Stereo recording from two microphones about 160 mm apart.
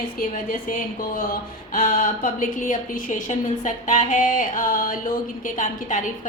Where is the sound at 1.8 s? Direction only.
60° left (ahead or behind).